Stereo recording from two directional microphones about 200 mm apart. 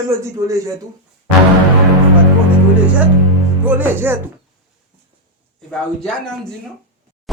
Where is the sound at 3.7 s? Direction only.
10° right (ahead or behind).